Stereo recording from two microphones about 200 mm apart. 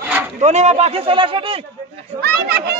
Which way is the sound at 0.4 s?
35° right (ahead or behind).